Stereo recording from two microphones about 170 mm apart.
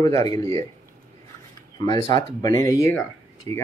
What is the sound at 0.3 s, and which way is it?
Speech, 20° left (ahead or behind).